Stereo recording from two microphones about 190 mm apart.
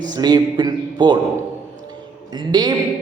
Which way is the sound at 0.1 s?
20° right (ahead or behind).